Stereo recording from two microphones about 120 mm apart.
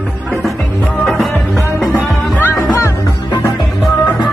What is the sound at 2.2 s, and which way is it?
Music, 15° left (ahead or behind).